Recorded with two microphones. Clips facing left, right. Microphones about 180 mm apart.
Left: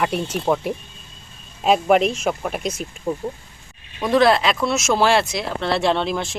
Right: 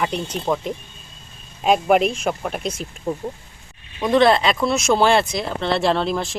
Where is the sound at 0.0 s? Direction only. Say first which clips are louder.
Left 2 dB; 5° left (ahead or behind).